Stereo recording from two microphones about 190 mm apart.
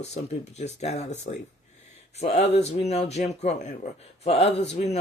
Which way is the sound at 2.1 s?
30° left (ahead or behind).